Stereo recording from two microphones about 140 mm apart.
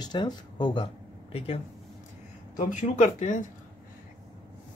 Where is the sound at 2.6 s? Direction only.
65° left (ahead or behind).